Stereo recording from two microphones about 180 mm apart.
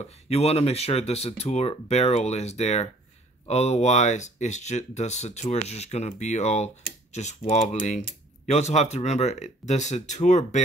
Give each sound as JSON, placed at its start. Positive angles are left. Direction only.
{"t": 0.0, "sound": "speech", "side_deg": 35}